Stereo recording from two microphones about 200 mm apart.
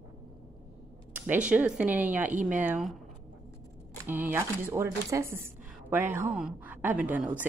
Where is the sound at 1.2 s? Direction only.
10° right (ahead or behind).